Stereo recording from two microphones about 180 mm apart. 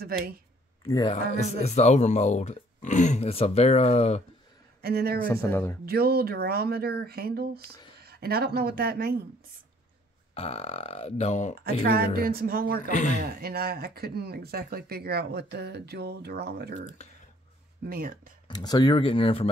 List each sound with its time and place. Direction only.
0.8 s speech: 20° left (ahead or behind)
1.1 s speech: 40° left (ahead or behind)
4.8 s speech: 60° right (ahead or behind)
5.3 s speech: 10° left (ahead or behind)
5.9 s a woman's voice: 60° right (ahead or behind)
10.3 s speech: 35° left (ahead or behind)
11.6 s speech: 55° right (ahead or behind)
12.9 s speech: 45° left (ahead or behind)
13.4 s speech: 55° right (ahead or behind)
17.8 s speech: 55° right (ahead or behind)
18.5 s speech: 20° left (ahead or behind)